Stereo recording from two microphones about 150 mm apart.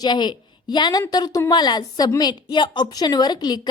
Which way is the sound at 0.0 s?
30° left (ahead or behind).